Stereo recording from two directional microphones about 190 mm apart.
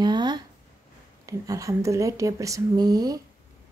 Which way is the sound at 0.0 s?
20° right (ahead or behind).